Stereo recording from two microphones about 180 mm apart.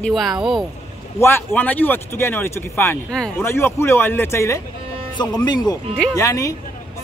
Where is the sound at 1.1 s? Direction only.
15° left (ahead or behind).